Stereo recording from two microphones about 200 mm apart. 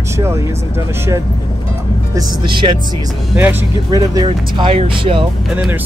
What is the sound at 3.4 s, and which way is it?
Speech, 15° right (ahead or behind).